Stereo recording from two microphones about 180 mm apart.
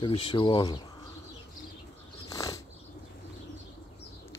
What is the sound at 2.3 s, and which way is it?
Bird flight, 20° left (ahead or behind).